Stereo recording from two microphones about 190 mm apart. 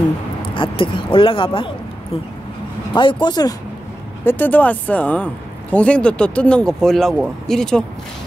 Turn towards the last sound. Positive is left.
turn(degrees=5)  # may be behind; listen again after turning